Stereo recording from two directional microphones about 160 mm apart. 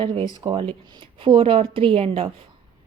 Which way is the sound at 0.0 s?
30° right (ahead or behind).